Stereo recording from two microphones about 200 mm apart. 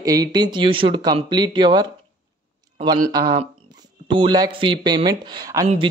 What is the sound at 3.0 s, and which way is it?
Speech, 20° right (ahead or behind).